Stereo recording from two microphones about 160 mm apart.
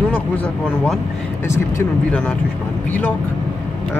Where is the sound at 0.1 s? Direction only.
5° left (ahead or behind).